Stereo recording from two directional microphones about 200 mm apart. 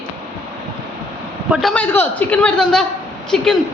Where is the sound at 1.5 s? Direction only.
Centre (ahead or behind).